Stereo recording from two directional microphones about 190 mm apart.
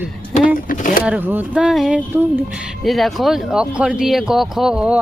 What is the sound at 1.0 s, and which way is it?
Speech, 10° right (ahead or behind).